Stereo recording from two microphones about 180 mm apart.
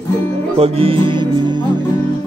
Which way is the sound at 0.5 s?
35° right (ahead or behind).